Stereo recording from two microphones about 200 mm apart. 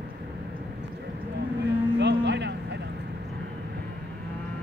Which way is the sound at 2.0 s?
60° right (ahead or behind).